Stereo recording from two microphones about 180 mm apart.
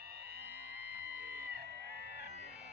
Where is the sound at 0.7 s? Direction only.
70° right (ahead or behind).